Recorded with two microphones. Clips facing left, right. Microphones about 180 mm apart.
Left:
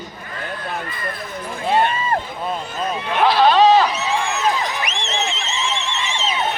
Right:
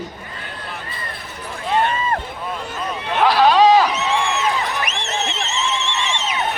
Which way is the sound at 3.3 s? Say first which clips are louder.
Even; 10° right (ahead or behind).